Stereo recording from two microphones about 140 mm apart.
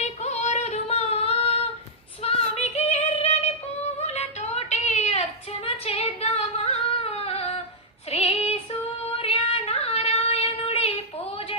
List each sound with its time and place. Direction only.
0.0 s female singing: 55° left (ahead or behind)